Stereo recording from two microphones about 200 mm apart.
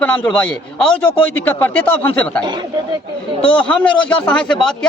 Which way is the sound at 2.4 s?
20° right (ahead or behind).